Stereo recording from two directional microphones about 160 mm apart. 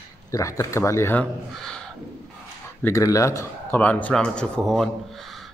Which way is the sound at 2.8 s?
20° left (ahead or behind).